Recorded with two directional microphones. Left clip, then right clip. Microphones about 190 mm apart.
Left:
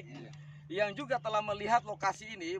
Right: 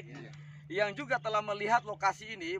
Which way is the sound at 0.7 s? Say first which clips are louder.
Right 1 dB; 15° left (ahead or behind).